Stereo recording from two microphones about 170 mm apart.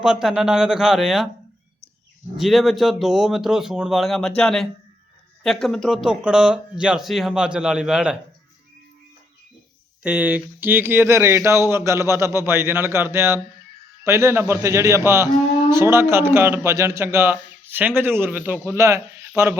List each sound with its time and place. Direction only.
0.0 s speech: 5° right (ahead or behind)
2.4 s speech: centre (ahead or behind)
10.0 s speech: 10° right (ahead or behind)